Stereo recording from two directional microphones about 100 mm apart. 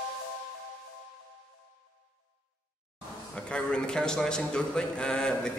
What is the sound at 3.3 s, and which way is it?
A man's voice, 10° left (ahead or behind).